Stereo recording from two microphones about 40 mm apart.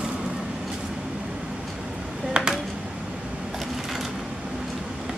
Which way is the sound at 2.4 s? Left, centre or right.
Centre.